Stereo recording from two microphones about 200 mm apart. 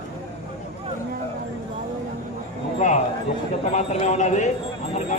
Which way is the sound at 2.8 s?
40° left (ahead or behind).